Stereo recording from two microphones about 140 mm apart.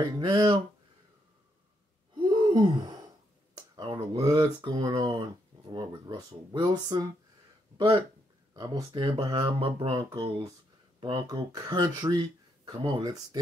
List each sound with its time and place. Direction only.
0.0 s speech: 30° right (ahead or behind)
2.1 s gasp: 35° right (ahead or behind)
3.9 s speech: 25° right (ahead or behind)
7.7 s a sound: 35° right (ahead or behind)
8.5 s speech: 30° right (ahead or behind)